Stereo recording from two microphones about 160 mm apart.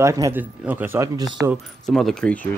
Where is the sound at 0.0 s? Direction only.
20° right (ahead or behind).